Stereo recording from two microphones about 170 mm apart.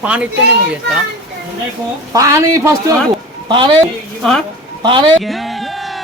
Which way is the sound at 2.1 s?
20° right (ahead or behind).